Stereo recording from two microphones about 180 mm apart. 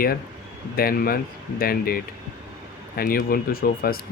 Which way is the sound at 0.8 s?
55° left (ahead or behind).